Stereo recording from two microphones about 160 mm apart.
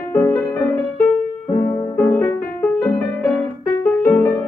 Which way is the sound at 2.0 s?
10° left (ahead or behind).